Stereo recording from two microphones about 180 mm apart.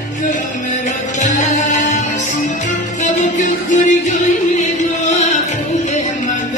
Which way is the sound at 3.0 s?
45° left (ahead or behind).